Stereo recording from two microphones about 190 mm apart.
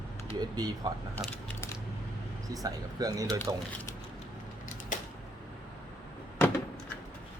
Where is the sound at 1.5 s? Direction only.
15° left (ahead or behind).